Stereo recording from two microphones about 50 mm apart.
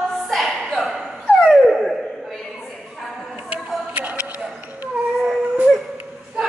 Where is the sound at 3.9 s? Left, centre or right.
Right.